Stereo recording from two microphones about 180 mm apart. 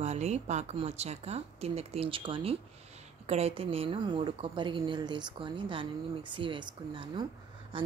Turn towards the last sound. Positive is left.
turn(degrees=-30)  # may be behind; listen again after turning